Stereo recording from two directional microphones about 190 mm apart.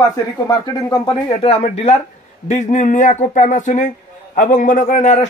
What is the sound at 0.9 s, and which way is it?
Speech, 25° left (ahead or behind).